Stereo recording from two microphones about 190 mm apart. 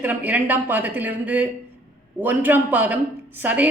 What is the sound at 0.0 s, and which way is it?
A woman's voice, 10° right (ahead or behind).